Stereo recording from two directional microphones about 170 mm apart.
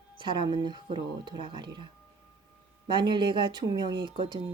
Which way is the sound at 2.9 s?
25° right (ahead or behind).